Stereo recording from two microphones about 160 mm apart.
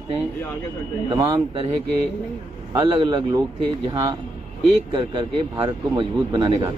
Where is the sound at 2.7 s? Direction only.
30° right (ahead or behind).